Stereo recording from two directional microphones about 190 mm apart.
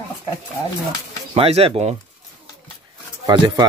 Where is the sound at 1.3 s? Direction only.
30° right (ahead or behind).